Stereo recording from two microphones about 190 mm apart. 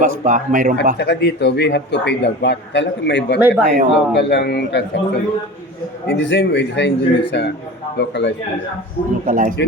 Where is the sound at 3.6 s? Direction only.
40° right (ahead or behind).